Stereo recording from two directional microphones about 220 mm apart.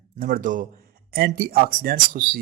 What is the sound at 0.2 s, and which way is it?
A man's voice, 40° right (ahead or behind).